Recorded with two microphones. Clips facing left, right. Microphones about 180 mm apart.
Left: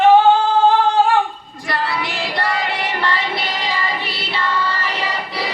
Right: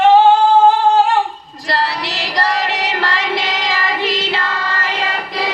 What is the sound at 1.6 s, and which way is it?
Female singing, 80° right.